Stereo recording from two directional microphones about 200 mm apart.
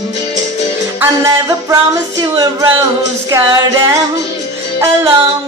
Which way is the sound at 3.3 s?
15° right (ahead or behind).